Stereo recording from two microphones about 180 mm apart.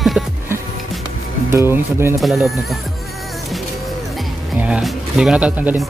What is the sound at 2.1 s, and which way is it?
Speech, centre (ahead or behind).